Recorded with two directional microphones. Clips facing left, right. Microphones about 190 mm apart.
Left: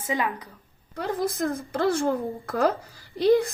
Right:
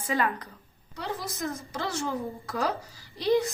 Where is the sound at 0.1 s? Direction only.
15° left (ahead or behind).